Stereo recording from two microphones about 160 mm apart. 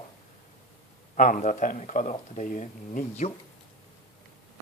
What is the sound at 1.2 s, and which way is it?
Speech, 55° left (ahead or behind).